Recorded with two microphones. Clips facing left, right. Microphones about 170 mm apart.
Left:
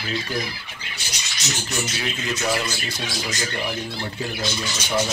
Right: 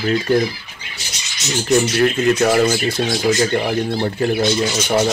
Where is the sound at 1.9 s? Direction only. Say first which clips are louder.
Right 13 dB; 55° right (ahead or behind).